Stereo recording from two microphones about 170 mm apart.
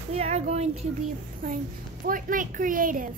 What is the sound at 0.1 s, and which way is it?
Speech, 40° right (ahead or behind).